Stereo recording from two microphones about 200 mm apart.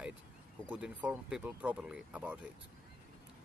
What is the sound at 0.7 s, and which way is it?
Speech, 5° right (ahead or behind).